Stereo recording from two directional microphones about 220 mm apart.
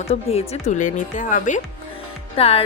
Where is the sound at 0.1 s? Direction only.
30° left (ahead or behind).